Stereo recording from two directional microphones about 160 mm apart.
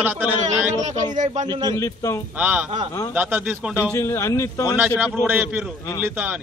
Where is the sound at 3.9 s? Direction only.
15° left (ahead or behind).